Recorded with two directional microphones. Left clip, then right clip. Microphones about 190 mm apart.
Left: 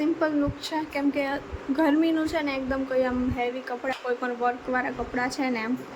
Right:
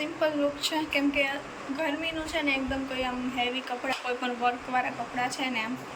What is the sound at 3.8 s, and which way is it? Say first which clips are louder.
Speech: left 3 dB; 20° left (ahead or behind).